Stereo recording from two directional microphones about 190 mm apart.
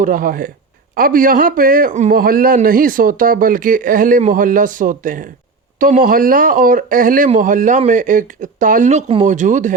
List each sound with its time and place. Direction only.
0.0 s a man's voice: 45° right (ahead or behind)